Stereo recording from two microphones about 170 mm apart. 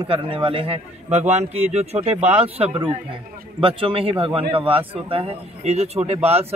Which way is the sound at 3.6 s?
30° right (ahead or behind).